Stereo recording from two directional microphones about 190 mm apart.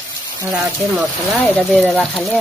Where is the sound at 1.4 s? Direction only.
5° left (ahead or behind).